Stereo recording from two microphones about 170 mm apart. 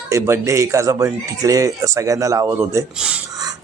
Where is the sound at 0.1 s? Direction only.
15° right (ahead or behind).